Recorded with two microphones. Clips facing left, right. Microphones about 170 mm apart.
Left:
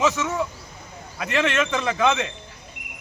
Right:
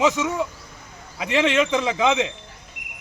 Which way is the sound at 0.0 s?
15° right (ahead or behind).